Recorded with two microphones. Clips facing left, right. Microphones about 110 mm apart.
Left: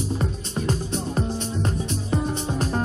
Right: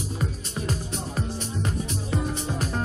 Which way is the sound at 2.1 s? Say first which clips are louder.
Left 4 dB; 35° left (ahead or behind).